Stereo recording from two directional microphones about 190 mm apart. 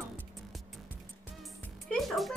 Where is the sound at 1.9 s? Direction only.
Centre (ahead or behind).